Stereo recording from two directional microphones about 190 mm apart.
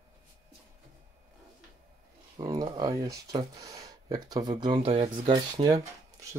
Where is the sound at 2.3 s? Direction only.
20° right (ahead or behind).